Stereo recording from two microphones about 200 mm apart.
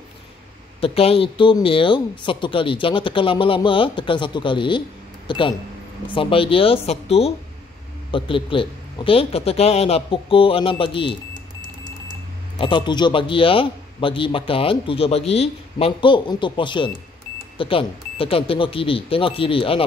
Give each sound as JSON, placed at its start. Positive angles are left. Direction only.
{"t": 0.7, "sound": "a man's voice", "side_deg": 30}
{"t": 12.5, "sound": "a man's voice", "side_deg": 25}